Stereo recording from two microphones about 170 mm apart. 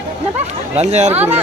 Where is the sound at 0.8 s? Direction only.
40° right (ahead or behind).